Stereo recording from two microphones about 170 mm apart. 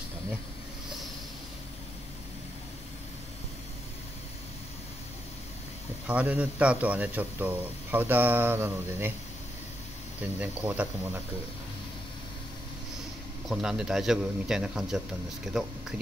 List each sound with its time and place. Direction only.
6.0 s a man's voice: 10° right (ahead or behind)
10.4 s a man's voice: 10° right (ahead or behind)
13.5 s speech: 5° right (ahead or behind)